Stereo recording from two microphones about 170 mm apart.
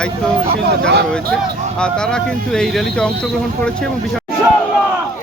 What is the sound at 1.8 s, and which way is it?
Speech, 5° left (ahead or behind).